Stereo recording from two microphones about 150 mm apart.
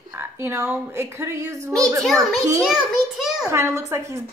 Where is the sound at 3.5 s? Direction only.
20° right (ahead or behind).